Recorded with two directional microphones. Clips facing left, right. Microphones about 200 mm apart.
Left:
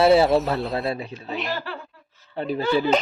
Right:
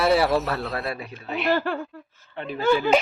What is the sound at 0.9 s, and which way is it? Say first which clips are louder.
Speech: left 3 dB; 25° left (ahead or behind).